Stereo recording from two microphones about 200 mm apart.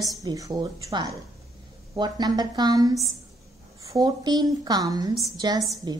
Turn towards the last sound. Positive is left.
turn(degrees=-20)  # may be behind; listen again after turning